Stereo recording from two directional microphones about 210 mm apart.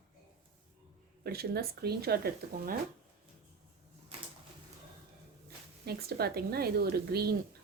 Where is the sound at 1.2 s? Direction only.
50° right (ahead or behind).